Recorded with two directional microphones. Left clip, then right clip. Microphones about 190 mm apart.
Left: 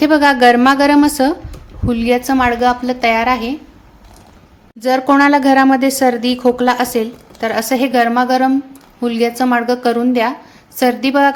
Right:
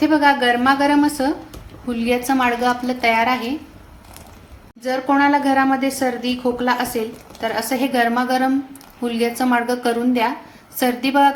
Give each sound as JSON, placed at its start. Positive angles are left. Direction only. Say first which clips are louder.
{"t": 0.0, "sound": "a woman's voice", "louder": "left 6 dB", "side_deg": 50}
{"t": 4.8, "sound": "a woman's voice", "louder": "left 6 dB", "side_deg": 50}